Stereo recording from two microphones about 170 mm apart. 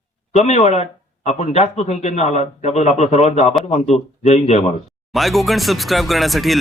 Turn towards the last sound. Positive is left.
turn(degrees=0)  # may be behind; listen again after turning